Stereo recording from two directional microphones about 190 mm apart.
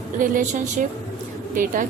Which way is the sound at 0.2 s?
45° right (ahead or behind).